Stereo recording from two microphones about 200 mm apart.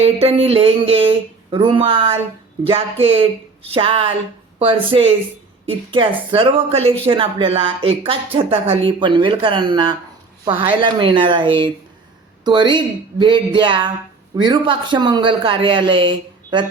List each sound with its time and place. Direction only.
0.0 s speech: 30° right (ahead or behind)